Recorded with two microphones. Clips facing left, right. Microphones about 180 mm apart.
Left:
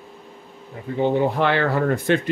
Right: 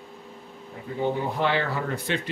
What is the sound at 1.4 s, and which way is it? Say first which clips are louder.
Speech: left 6 dB; 65° left (ahead or behind).